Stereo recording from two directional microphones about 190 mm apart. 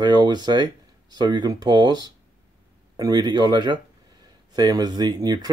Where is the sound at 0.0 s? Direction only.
25° right (ahead or behind).